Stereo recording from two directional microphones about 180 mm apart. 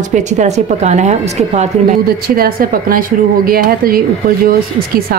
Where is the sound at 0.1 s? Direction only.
40° right (ahead or behind).